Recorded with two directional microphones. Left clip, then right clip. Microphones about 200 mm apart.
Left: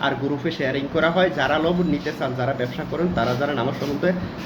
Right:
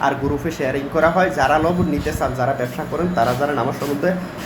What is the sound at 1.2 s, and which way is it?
Speech, 10° left (ahead or behind).